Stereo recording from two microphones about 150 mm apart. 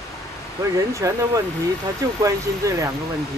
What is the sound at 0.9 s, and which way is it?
Speech, 20° right (ahead or behind).